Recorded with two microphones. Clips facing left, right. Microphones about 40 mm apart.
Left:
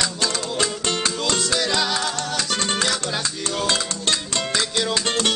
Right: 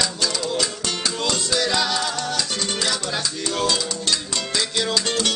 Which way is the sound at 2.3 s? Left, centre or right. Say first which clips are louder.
Left 2 dB; left.